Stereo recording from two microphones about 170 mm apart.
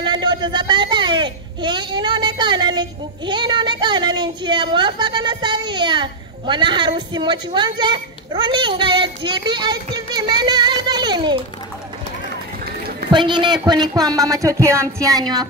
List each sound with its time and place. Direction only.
0.0 s a child's voice: 25° right (ahead or behind)
13.1 s a child's voice: 25° right (ahead or behind)